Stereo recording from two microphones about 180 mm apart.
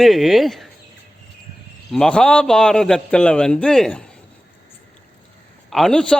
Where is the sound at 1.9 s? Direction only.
5° left (ahead or behind).